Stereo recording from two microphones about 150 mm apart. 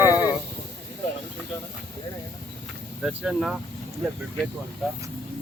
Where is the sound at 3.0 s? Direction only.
5° right (ahead or behind).